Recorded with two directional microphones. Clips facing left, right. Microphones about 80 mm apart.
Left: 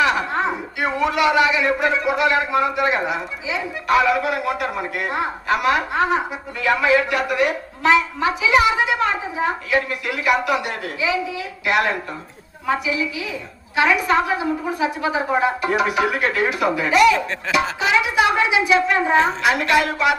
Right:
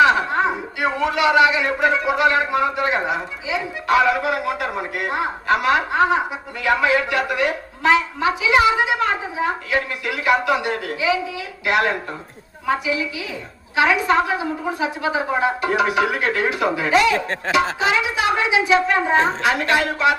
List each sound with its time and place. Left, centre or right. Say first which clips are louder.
0.0 s a sound: right 3 dB; right
1.0 s a man's voice: right 1 dB; right
9.0 s a woman's voice: even; left
10.1 s a man's voice: right 2 dB; right
15.0 s a woman's voice: even; left
15.6 s a man's voice: right 1 dB; right
17.2 s a man's voice: right 1 dB; right